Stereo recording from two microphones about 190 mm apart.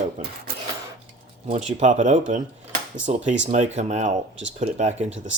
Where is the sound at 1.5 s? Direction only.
40° right (ahead or behind).